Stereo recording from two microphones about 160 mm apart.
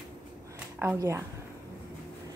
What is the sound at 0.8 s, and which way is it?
Speech, 20° right (ahead or behind).